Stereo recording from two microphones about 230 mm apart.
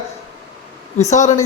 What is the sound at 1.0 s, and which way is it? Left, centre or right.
Speech, left.